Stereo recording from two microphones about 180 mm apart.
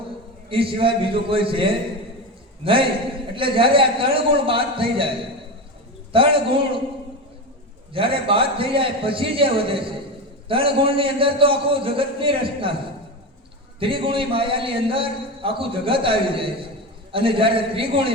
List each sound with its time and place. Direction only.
0.5 s a man's voice: 30° right (ahead or behind)
6.1 s a man's voice: 30° right (ahead or behind)
7.9 s a man's voice: 30° right (ahead or behind)
13.7 s a man's voice: 30° right (ahead or behind)